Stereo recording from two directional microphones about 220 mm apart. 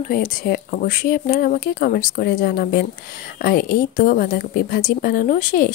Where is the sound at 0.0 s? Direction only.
40° left (ahead or behind).